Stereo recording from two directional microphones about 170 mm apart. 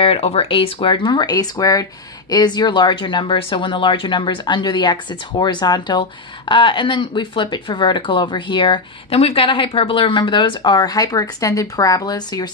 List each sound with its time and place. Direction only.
0.0 s speech: 35° left (ahead or behind)